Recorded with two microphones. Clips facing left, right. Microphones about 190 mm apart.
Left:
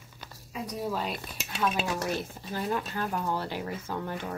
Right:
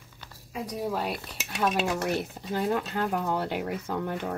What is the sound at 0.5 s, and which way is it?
Speech, 55° right (ahead or behind).